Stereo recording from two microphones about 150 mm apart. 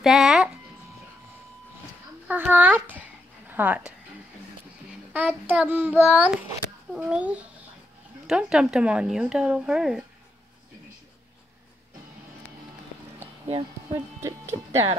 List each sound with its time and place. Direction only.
0.0 s music: centre (ahead or behind)
2.2 s child singing: 10° right (ahead or behind)
3.4 s a woman's voice: 10° right (ahead or behind)
5.1 s child singing: 10° right (ahead or behind)
6.0 s a woman's voice: 5° right (ahead or behind)
6.9 s child singing: 5° right (ahead or behind)
8.3 s a woman's voice: 5° right (ahead or behind)
14.2 s speech: 20° right (ahead or behind)